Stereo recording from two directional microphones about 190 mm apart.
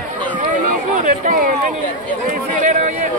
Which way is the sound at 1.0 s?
45° right (ahead or behind).